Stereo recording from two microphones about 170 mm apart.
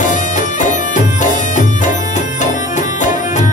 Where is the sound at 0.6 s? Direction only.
45° left (ahead or behind).